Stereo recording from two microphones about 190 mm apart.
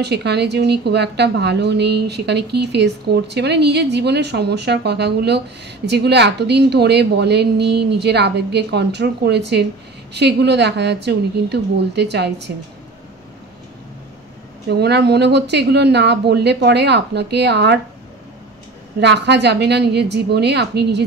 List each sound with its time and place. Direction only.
0.0 s a woman's voice: 60° right (ahead or behind)
14.7 s a woman's voice: 60° right (ahead or behind)
18.9 s a woman's voice: 65° right (ahead or behind)